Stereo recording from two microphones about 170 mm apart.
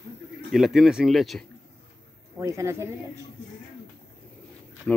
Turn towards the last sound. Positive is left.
turn(degrees=10)  # may be behind; listen again after turning